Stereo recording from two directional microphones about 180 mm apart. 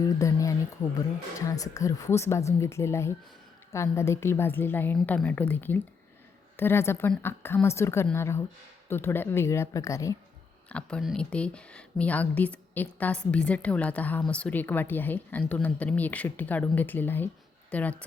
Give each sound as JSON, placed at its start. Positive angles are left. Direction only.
{"t": 0.0, "sound": "speech", "side_deg": 20}
{"t": 10.7, "sound": "a woman's voice", "side_deg": 5}